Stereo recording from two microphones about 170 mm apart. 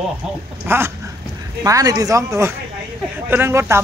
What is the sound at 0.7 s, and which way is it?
Speech, 15° right (ahead or behind).